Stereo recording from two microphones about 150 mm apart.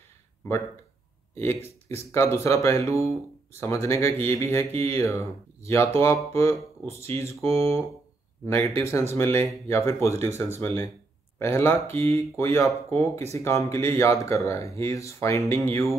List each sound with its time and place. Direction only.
1.3 s speech: 20° left (ahead or behind)